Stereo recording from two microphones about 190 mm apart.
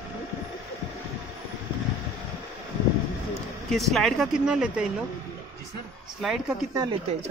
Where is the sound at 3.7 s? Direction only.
Centre (ahead or behind).